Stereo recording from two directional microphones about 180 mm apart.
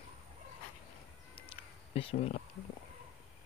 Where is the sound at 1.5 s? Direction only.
30° left (ahead or behind).